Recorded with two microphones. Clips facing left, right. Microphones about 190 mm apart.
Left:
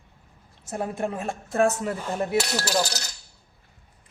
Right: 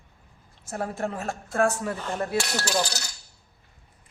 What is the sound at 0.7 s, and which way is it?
Speech, 20° left (ahead or behind).